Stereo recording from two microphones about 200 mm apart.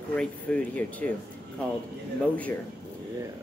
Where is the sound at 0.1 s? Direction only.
5° left (ahead or behind).